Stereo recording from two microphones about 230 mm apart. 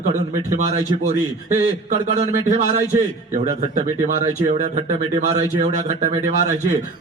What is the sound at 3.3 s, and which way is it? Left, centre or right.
A man's voice, right.